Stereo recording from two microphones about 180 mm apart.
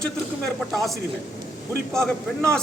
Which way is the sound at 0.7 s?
Centre (ahead or behind).